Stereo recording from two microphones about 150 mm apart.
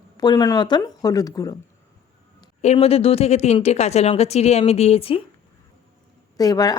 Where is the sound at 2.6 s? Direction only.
45° left (ahead or behind).